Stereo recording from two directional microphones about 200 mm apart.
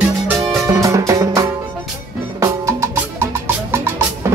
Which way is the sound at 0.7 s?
15° right (ahead or behind).